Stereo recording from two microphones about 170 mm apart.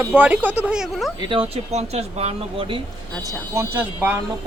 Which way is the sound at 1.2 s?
35° right (ahead or behind).